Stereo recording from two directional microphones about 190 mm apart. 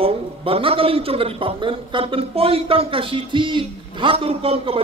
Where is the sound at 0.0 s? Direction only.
30° right (ahead or behind).